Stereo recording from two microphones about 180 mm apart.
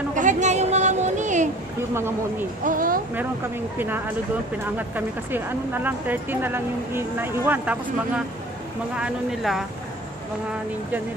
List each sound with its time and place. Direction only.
0.1 s a sound: 45° right (ahead or behind)
2.0 s speech: 15° right (ahead or behind)
2.6 s speech: 50° right (ahead or behind)
3.2 s speech: 10° right (ahead or behind)
8.9 s speech: 5° right (ahead or behind)